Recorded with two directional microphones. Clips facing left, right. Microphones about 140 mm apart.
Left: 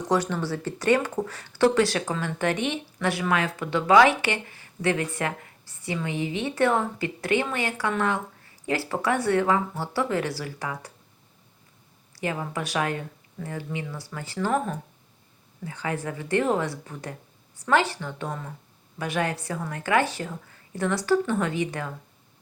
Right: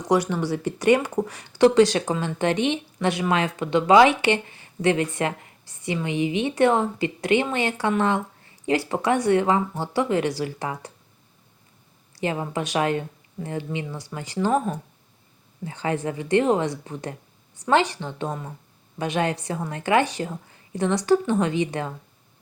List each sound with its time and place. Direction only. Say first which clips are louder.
0.0 s speech: right 3 dB; 10° right (ahead or behind)
12.1 s speech: right 3 dB; 25° right (ahead or behind)